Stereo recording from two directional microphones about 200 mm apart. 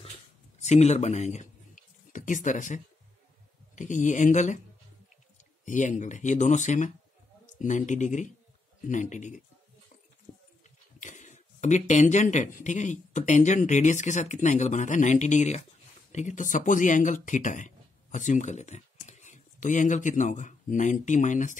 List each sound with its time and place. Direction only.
0.6 s speech: 35° left (ahead or behind)
5.7 s speech: 40° left (ahead or behind)
11.0 s speech: 40° left (ahead or behind)